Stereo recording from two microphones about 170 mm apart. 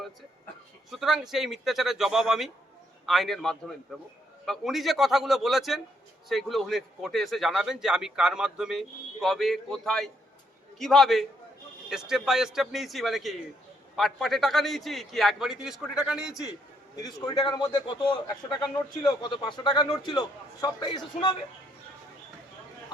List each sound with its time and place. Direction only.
0.9 s a man's voice: centre (ahead or behind)
17.0 s a man's voice: 20° left (ahead or behind)